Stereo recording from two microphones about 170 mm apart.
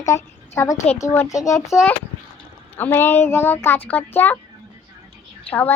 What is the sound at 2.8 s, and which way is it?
A woman's voice, 15° left (ahead or behind).